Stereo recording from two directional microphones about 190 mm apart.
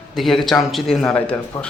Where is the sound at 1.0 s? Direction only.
10° left (ahead or behind).